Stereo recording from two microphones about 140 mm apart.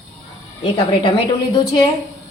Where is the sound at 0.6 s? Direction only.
35° left (ahead or behind).